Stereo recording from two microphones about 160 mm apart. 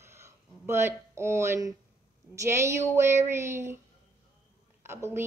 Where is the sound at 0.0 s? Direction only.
15° right (ahead or behind).